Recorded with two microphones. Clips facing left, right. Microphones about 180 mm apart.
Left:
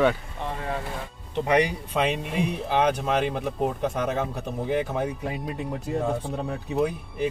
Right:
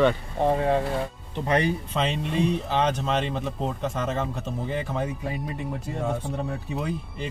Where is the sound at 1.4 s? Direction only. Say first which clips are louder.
Left 1 dB; 15° left (ahead or behind).